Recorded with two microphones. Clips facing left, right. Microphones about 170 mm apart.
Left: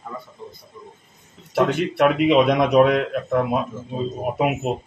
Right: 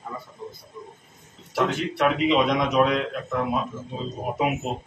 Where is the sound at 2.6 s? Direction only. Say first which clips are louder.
Left 5 dB; 60° left (ahead or behind).